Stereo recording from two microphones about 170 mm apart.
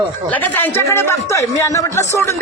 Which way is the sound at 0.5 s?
10° left (ahead or behind).